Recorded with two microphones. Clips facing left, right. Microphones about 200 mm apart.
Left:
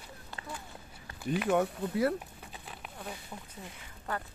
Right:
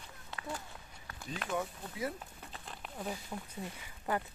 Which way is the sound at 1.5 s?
70° left (ahead or behind).